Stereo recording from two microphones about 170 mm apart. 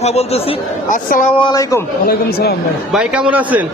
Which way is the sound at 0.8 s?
50° left (ahead or behind).